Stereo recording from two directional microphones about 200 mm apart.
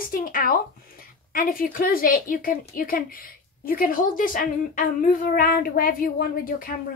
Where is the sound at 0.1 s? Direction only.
45° left (ahead or behind).